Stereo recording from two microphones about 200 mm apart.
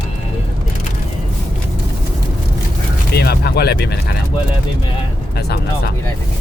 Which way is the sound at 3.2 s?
50° left (ahead or behind).